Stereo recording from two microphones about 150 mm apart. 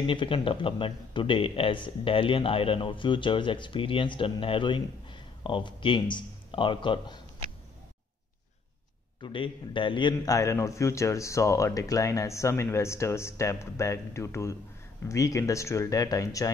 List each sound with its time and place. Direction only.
0.0 s a man's voice: 35° left (ahead or behind)
9.2 s a man's voice: 35° left (ahead or behind)